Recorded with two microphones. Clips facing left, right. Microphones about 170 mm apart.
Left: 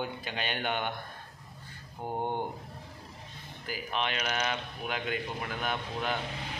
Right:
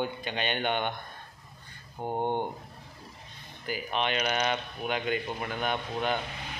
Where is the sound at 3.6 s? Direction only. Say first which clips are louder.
Right 3 dB; centre (ahead or behind).